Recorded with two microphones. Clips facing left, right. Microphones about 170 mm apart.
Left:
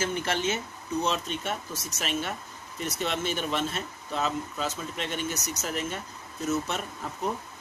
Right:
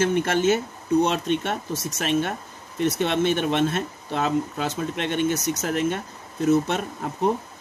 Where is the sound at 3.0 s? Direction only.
55° right (ahead or behind).